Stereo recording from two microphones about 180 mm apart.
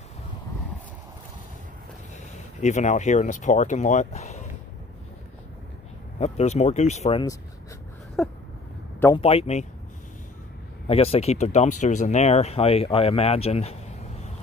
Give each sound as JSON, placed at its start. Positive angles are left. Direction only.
{"t": 2.6, "sound": "speech", "side_deg": 40}
{"t": 6.1, "sound": "speech", "side_deg": 35}
{"t": 8.2, "sound": "a sound", "side_deg": 0}
{"t": 9.1, "sound": "speech", "side_deg": 35}
{"t": 10.9, "sound": "speech", "side_deg": 35}